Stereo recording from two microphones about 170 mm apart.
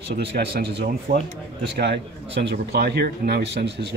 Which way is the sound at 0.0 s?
75° right (ahead or behind).